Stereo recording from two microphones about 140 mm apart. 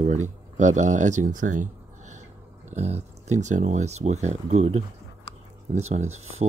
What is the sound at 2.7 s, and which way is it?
Speech, 50° right (ahead or behind).